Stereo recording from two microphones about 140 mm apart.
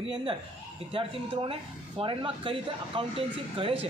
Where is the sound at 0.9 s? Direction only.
40° right (ahead or behind).